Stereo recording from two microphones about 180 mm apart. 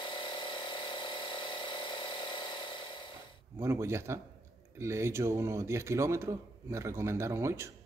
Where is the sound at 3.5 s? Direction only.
15° right (ahead or behind).